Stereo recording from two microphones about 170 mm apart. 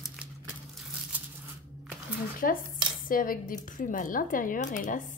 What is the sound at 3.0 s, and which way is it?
Cutlery, 55° left (ahead or behind).